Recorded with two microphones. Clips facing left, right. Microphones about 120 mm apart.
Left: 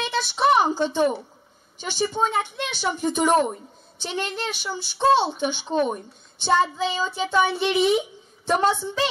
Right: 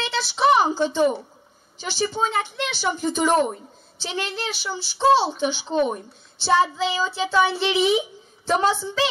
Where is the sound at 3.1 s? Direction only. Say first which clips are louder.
Left 1 dB; 15° left (ahead or behind).